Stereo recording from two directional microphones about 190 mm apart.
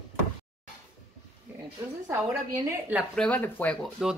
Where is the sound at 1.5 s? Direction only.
10° right (ahead or behind).